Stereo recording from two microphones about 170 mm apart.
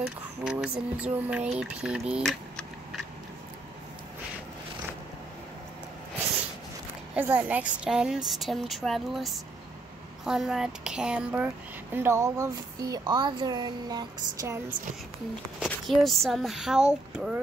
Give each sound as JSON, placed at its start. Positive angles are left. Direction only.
{"t": 0.0, "sound": "a woman's voice", "side_deg": -5}
{"t": 7.2, "sound": "a woman's voice", "side_deg": -10}
{"t": 15.6, "sound": "a woman's voice", "side_deg": 0}